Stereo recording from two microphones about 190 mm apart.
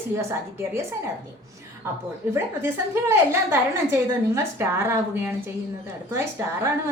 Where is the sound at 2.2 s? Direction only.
10° right (ahead or behind).